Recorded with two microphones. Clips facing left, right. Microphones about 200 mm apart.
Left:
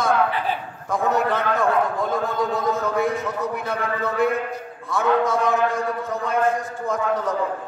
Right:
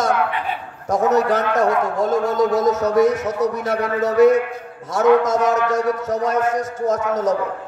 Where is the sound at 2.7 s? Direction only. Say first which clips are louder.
Right 6 dB; 40° right (ahead or behind).